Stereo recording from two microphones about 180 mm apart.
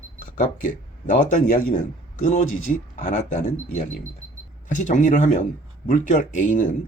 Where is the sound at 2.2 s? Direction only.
40° left (ahead or behind).